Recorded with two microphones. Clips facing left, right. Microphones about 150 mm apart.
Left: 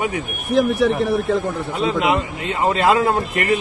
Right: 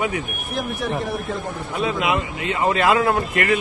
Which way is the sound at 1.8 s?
30° left (ahead or behind).